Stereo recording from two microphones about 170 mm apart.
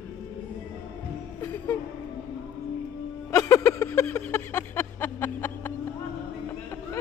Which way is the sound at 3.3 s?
20° left (ahead or behind).